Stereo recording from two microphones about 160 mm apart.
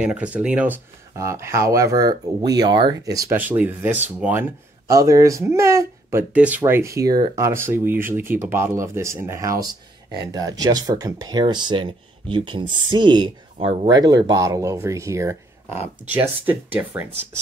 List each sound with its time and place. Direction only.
0.0 s speech: 5° right (ahead or behind)
3.3 s speech: 10° right (ahead or behind)